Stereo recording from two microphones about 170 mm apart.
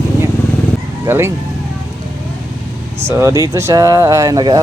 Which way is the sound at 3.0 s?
15° right (ahead or behind).